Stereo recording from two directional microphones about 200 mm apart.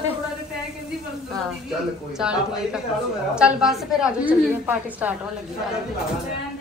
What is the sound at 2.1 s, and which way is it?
A woman's voice, 5° right (ahead or behind).